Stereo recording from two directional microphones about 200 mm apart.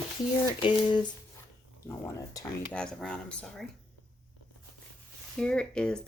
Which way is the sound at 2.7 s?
5° left (ahead or behind).